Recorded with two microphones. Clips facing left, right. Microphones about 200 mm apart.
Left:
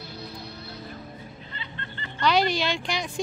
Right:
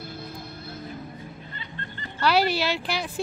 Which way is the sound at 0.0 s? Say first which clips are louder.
Right 1 dB; 50° right (ahead or behind).